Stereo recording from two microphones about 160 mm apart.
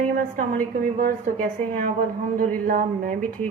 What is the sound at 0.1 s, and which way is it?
A woman's voice, 55° right (ahead or behind).